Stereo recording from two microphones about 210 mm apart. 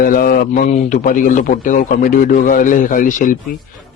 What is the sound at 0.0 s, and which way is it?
A man's voice, 45° left (ahead or behind).